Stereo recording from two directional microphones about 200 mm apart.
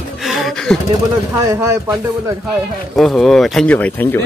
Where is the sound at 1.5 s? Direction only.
15° right (ahead or behind).